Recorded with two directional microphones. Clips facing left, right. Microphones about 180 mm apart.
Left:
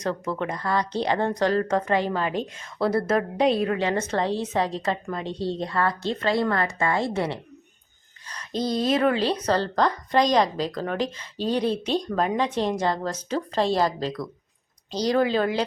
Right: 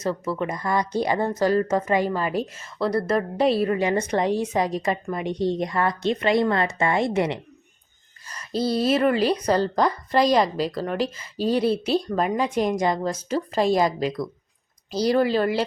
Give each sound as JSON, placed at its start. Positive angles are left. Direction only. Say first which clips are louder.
{"t": 0.0, "sound": "speech", "louder": "right 2 dB", "side_deg": -5}
{"t": 8.3, "sound": "speech", "louder": "right 2 dB", "side_deg": -5}